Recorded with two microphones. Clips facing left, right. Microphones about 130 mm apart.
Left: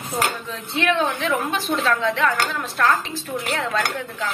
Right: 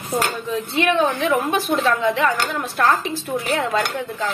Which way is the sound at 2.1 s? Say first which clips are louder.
Right 1 dB; 10° right (ahead or behind).